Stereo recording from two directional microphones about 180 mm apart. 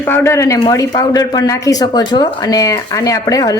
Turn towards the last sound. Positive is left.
turn(degrees=20)  # may be behind; listen again after turning